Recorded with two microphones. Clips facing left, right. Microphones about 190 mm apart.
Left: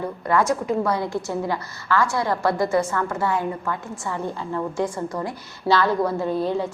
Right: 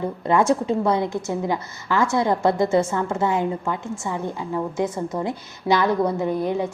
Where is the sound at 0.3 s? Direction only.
25° right (ahead or behind).